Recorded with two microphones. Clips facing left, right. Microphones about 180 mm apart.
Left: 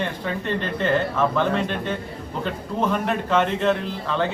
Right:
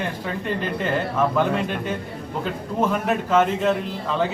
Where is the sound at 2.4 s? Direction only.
5° right (ahead or behind).